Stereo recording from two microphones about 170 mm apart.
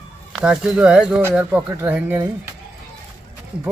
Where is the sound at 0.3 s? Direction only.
5° right (ahead or behind).